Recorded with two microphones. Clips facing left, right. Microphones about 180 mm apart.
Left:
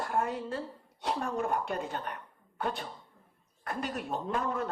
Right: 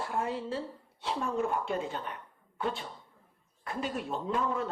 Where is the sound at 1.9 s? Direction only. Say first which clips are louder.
Left 1 dB; 55° left (ahead or behind).